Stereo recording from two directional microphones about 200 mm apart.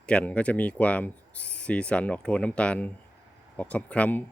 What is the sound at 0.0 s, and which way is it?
Speech, 5° left (ahead or behind).